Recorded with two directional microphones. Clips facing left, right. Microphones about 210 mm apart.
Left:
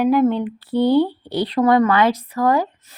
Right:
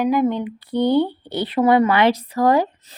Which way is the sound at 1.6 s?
30° right (ahead or behind).